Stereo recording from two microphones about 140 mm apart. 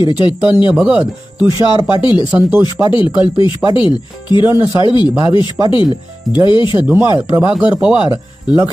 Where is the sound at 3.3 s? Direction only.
35° left (ahead or behind).